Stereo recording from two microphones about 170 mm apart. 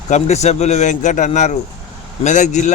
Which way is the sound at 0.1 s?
40° left (ahead or behind).